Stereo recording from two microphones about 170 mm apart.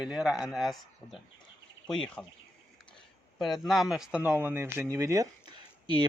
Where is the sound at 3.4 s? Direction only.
Centre (ahead or behind).